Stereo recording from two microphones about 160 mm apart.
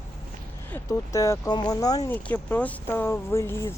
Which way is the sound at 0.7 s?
20° left (ahead or behind).